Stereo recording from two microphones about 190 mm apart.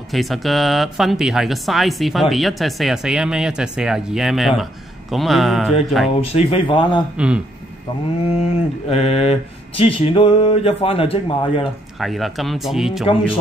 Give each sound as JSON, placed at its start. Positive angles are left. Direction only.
{"t": 0.1, "sound": "speech", "side_deg": 0}
{"t": 6.3, "sound": "speech", "side_deg": 30}
{"t": 7.2, "sound": "speech", "side_deg": -5}
{"t": 8.4, "sound": "speech", "side_deg": 30}
{"t": 12.0, "sound": "speech", "side_deg": 0}